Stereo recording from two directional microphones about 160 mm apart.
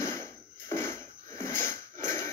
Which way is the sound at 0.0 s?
15° left (ahead or behind).